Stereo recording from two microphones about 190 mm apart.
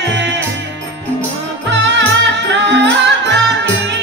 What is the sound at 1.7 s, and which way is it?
Music, 65° right (ahead or behind).